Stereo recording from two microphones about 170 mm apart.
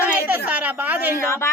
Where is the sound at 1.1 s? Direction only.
15° left (ahead or behind).